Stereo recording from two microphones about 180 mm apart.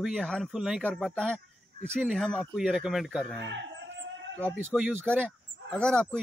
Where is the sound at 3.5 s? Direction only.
85° right.